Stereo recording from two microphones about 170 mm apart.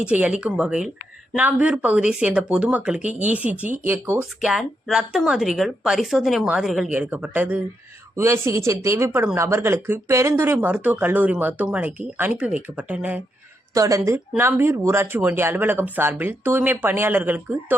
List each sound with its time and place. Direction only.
0.0 s speech: 10° right (ahead or behind)
4.4 s speech: centre (ahead or behind)
13.7 s speech: 20° right (ahead or behind)